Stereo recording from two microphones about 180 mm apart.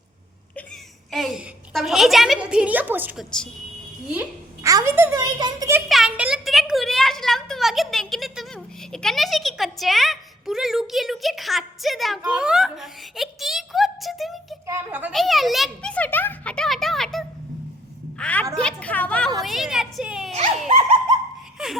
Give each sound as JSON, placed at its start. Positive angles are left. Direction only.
{"t": 1.1, "sound": "a child's voice", "side_deg": 0}
{"t": 4.6, "sound": "a child's voice", "side_deg": -15}
{"t": 5.9, "sound": "a child's voice", "side_deg": -5}
{"t": 14.7, "sound": "a child's voice", "side_deg": -10}
{"t": 20.7, "sound": "a sound", "side_deg": -35}
{"t": 21.6, "sound": "a sound", "side_deg": -5}